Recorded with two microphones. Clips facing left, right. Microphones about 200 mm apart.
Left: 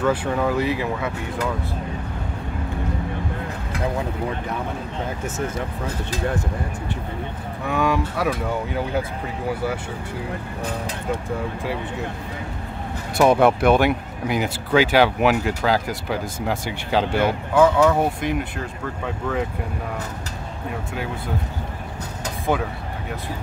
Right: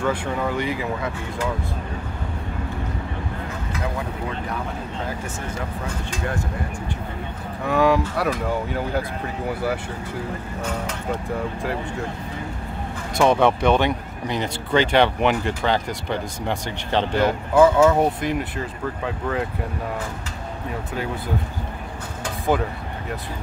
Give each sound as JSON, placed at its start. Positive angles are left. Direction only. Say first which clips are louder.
{"t": 0.0, "sound": "speech", "louder": "left 3 dB", "side_deg": 5}
{"t": 7.6, "sound": "speech", "louder": "right 3 dB", "side_deg": 0}
{"t": 10.6, "sound": "speech", "louder": "right 1 dB", "side_deg": 35}
{"t": 13.2, "sound": "speech", "louder": "left 2 dB", "side_deg": 10}